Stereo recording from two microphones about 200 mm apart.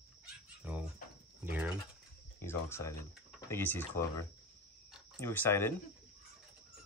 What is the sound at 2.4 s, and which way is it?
Speech, 15° left (ahead or behind).